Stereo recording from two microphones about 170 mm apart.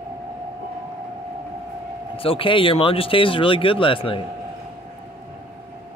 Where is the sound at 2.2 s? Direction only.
30° left (ahead or behind).